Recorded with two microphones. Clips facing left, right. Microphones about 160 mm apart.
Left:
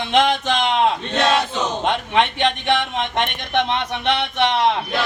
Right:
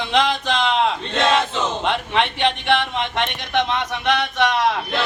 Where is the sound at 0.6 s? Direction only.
20° left (ahead or behind).